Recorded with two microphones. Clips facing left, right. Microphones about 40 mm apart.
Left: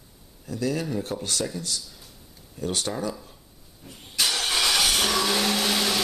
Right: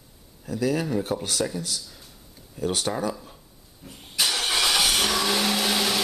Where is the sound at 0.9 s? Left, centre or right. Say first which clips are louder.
Right 3 dB; centre.